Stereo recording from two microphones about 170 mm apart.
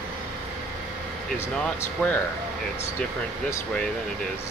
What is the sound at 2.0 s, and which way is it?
Speech, 5° left (ahead or behind).